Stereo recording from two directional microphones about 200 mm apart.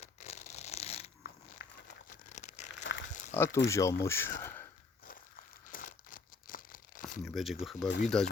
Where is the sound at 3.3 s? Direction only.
10° left (ahead or behind).